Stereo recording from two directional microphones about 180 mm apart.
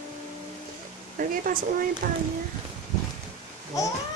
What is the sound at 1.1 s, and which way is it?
Speech, 50° right (ahead or behind).